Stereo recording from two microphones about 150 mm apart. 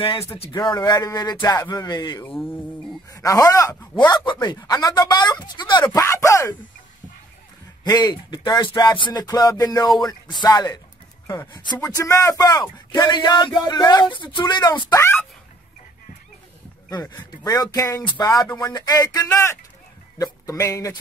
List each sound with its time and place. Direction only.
0.4 s music: 30° left (ahead or behind)
2.2 s music: centre (ahead or behind)
3.1 s speech: 20° left (ahead or behind)
4.1 s music: 30° left (ahead or behind)
5.9 s music: 20° left (ahead or behind)
7.8 s music: 25° left (ahead or behind)
16.9 s music: 20° left (ahead or behind)
20.2 s speech: 20° left (ahead or behind)